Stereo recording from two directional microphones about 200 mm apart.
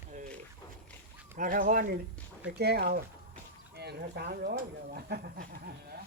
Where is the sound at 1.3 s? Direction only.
40° right (ahead or behind).